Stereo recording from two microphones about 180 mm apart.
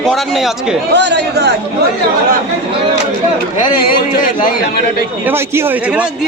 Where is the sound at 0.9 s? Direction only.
70° right (ahead or behind).